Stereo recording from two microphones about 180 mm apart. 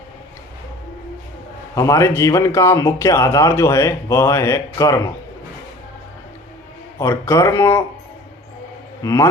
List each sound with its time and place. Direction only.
1.7 s a man's voice: 15° left (ahead or behind)
7.0 s a man's voice: 15° left (ahead or behind)
9.0 s a man's voice: 15° left (ahead or behind)